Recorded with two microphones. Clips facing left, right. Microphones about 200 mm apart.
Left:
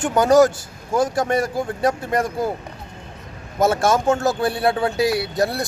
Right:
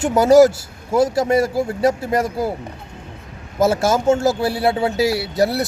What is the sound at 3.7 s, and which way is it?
Speech, 25° right (ahead or behind).